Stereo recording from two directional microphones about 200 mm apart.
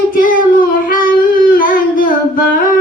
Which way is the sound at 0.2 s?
45° left (ahead or behind).